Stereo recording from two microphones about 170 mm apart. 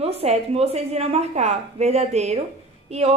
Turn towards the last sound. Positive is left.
turn(degrees=-40)  # may be behind; listen again after turning